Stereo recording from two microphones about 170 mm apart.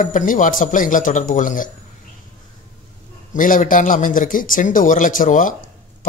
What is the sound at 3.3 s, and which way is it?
Speech, 50° left (ahead or behind).